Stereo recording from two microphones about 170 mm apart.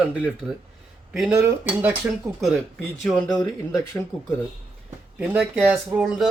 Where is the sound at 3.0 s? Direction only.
5° left (ahead or behind).